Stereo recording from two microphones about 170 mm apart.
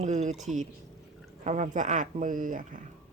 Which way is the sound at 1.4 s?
45° right (ahead or behind).